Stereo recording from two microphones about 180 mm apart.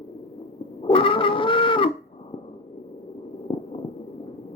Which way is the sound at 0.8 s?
30° left (ahead or behind).